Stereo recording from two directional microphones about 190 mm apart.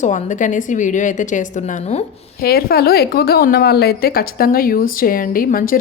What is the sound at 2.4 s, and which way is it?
A woman's voice, 55° left (ahead or behind).